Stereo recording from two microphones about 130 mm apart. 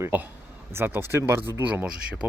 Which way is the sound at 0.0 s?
15° right (ahead or behind).